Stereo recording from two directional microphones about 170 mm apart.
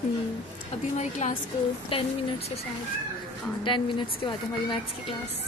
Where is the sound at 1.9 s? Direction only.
30° left (ahead or behind).